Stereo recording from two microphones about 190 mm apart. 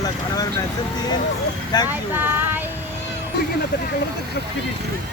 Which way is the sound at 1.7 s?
20° left (ahead or behind).